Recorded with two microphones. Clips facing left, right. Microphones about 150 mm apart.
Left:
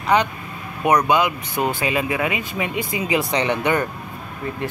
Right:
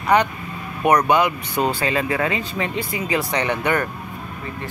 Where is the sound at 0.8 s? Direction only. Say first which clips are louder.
Right 1 dB; 15° left (ahead or behind).